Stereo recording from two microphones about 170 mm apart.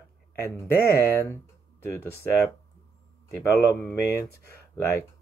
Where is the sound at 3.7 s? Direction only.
15° left (ahead or behind).